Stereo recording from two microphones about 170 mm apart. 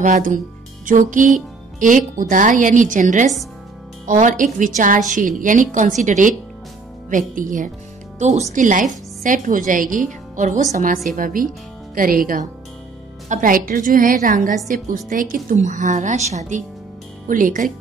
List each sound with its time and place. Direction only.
0.0 s a woman's voice: 50° right (ahead or behind)